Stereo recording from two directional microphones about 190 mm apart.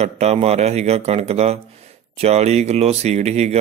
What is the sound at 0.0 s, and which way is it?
Speech, 35° right (ahead or behind).